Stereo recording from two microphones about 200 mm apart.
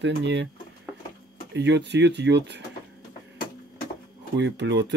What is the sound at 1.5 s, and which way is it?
Speech, 60° right (ahead or behind).